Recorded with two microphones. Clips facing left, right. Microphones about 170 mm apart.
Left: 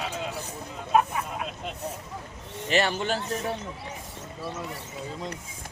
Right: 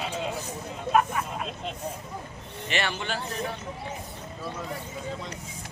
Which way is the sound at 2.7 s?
40° left (ahead or behind).